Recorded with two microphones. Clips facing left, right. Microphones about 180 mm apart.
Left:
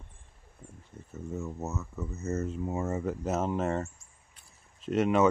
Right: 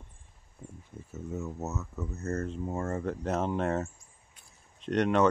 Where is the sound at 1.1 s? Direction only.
Centre (ahead or behind).